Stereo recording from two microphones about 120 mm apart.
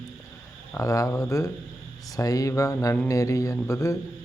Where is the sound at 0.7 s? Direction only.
30° left (ahead or behind).